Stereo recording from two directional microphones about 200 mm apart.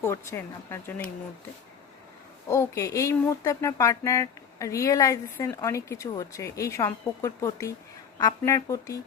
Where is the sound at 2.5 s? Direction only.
15° left (ahead or behind).